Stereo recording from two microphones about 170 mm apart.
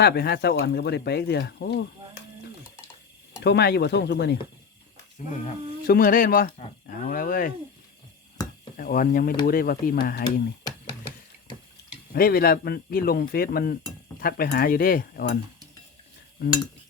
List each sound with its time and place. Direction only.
0.0 s speech: 70° left (ahead or behind)
3.4 s speech: 80° left
5.2 s speech: 45° left (ahead or behind)
5.9 s speech: 55° left (ahead or behind)
8.4 s a sound: 20° left (ahead or behind)
8.7 s speech: 55° left (ahead or behind)
12.1 s speech: 60° left (ahead or behind)